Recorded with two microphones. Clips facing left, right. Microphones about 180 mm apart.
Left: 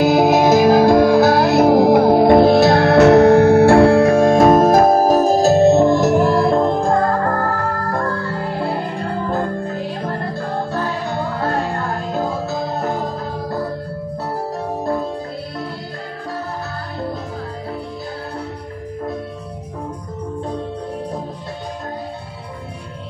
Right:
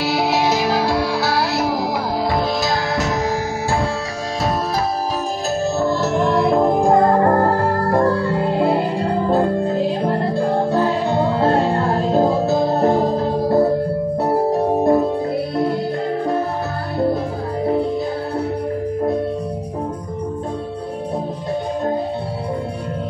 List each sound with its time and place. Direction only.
0.0 s music: 50° left (ahead or behind)
5.5 s music: 25° left (ahead or behind); by 10.6 s 15° right (ahead or behind)
10.7 s music: 25° right (ahead or behind)